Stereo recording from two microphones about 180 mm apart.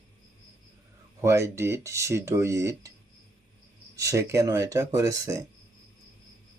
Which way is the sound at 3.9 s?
15° right (ahead or behind).